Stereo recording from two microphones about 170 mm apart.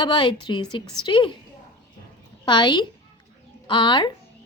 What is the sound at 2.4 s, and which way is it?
A woman's voice, 25° left (ahead or behind).